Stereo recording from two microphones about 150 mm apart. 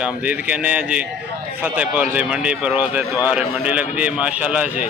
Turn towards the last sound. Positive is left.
turn(degrees=-10)  # may be behind; listen again after turning